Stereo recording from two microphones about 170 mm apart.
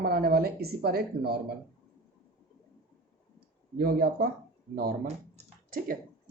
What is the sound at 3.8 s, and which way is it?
Speech, 65° right (ahead or behind).